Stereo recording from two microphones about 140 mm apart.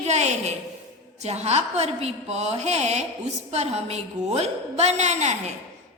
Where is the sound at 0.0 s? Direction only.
55° right (ahead or behind).